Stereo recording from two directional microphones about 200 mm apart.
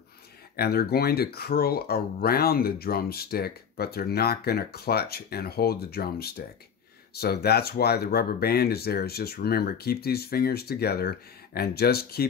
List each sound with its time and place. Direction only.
0.6 s speech: 50° left (ahead or behind)